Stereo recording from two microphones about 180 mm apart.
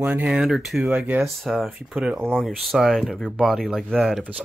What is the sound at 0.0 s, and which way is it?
Speech, 5° right (ahead or behind).